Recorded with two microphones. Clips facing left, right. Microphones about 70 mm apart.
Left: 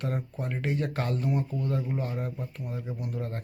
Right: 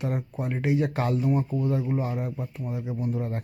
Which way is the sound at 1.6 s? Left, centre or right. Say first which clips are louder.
Right 4 dB; centre.